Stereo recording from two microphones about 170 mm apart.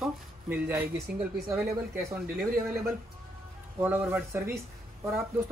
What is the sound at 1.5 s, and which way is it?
Speech, 15° right (ahead or behind).